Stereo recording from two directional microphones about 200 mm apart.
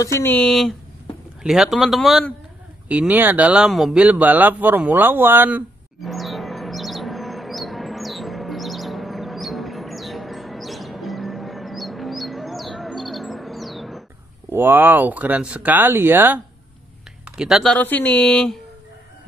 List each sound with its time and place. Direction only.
0.0 s speech: 15° left (ahead or behind)
2.9 s a sound: 5° right (ahead or behind)
14.5 s speech: 10° right (ahead or behind)
17.4 s speech: centre (ahead or behind)